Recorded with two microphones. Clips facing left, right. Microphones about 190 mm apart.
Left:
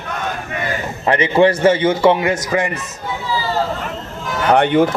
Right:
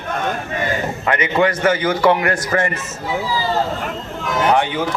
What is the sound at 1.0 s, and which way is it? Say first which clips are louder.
A man's voice: left 5 dB; 30° left (ahead or behind).